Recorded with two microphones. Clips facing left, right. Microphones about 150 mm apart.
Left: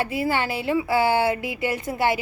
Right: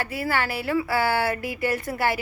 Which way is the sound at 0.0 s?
20° left (ahead or behind).